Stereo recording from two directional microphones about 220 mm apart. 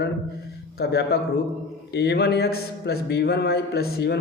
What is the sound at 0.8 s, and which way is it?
Speech, 45° left (ahead or behind).